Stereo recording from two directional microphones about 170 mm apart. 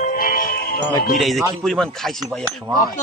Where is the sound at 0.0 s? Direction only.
55° left (ahead or behind).